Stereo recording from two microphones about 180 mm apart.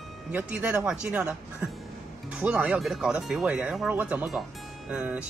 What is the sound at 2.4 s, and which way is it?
Speech, 5° right (ahead or behind).